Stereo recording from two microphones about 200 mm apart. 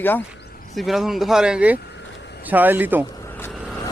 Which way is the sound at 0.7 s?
Centre (ahead or behind).